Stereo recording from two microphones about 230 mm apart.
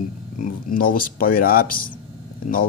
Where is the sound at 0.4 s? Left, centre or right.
Left.